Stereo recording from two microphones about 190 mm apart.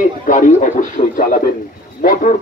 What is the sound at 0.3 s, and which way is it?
A man's voice, 45° left (ahead or behind).